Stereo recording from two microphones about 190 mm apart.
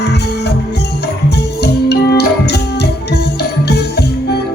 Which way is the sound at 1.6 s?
60° left (ahead or behind).